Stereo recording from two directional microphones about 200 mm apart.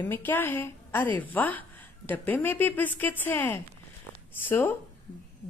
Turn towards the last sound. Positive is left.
turn(degrees=10)  # may be behind; listen again after turning